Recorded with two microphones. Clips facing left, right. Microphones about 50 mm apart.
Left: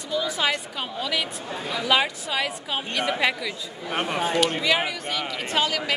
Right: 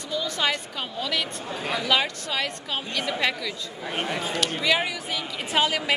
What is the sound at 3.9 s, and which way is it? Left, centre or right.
Speech, left.